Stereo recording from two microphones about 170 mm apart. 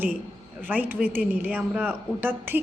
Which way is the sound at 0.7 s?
10° right (ahead or behind).